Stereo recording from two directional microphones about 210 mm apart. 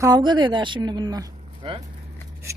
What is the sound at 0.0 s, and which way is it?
Speech, 20° right (ahead or behind).